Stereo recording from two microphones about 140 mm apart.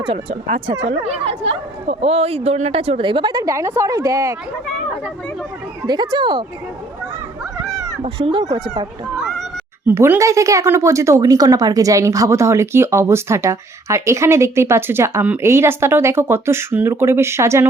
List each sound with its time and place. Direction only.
0.0 s speech: 45° right (ahead or behind); by 4.4 s 20° right (ahead or behind)
5.8 s speech: 30° right (ahead or behind)
8.0 s speech: 40° right (ahead or behind)
9.8 s speech: 15° right (ahead or behind)